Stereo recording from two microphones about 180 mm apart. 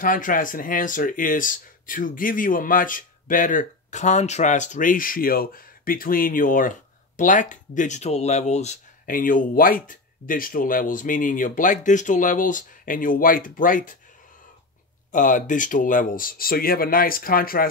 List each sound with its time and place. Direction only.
0.0 s speech: 50° left (ahead or behind)
15.0 s speech: 45° left (ahead or behind)